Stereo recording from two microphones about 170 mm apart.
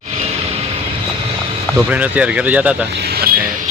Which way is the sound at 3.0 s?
65° right (ahead or behind).